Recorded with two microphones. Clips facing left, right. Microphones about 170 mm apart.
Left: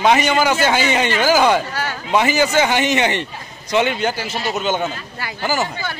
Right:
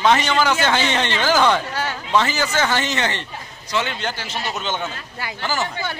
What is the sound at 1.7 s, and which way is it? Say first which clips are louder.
Speech: left 1 dB; 25° right (ahead or behind).